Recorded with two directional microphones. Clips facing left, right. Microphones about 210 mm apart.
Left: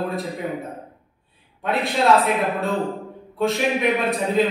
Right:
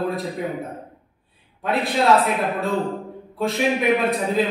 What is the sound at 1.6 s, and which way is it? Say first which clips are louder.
Speech: even; centre (ahead or behind).